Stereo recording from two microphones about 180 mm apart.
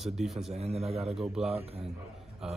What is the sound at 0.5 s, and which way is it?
Speech, 35° right (ahead or behind).